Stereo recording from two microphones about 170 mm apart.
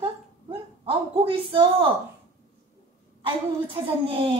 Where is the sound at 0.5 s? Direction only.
30° right (ahead or behind).